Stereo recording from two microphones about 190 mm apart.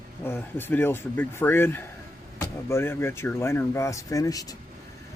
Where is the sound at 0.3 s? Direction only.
10° left (ahead or behind).